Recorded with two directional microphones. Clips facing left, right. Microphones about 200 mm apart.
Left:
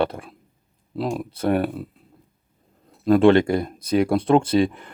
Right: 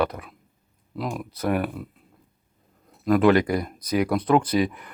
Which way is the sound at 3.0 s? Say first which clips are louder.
Left 3 dB; 30° left (ahead or behind).